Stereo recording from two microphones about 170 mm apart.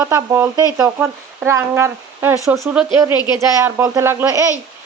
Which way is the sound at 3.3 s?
20° right (ahead or behind).